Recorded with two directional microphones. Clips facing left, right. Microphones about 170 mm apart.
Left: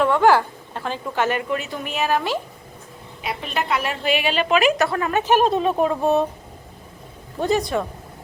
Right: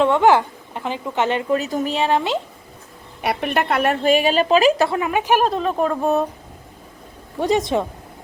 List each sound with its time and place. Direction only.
0.0 s a woman's voice: 20° right (ahead or behind)
1.5 s speech: 40° right (ahead or behind); by 2.4 s 25° right (ahead or behind)
3.2 s a woman's voice: 60° right (ahead or behind); by 4.9 s 30° right (ahead or behind)
4.9 s speech: 15° right (ahead or behind)
5.5 s speech: 5° left (ahead or behind)
7.7 s a woman's voice: 20° right (ahead or behind)